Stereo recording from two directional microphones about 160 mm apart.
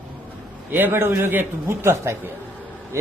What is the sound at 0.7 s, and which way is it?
A man's voice, 15° right (ahead or behind).